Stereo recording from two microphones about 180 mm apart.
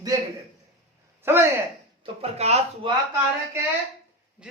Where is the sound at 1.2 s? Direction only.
10° right (ahead or behind).